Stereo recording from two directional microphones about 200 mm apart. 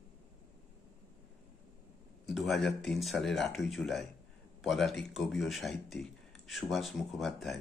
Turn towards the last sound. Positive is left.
turn(degrees=0)  # may be behind; listen again after turning